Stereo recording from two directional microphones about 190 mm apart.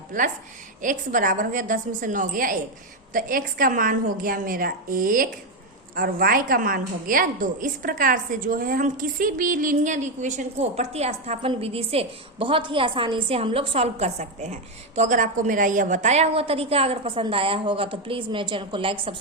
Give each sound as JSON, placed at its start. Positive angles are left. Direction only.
{"t": 0.1, "sound": "a woman's voice", "side_deg": -45}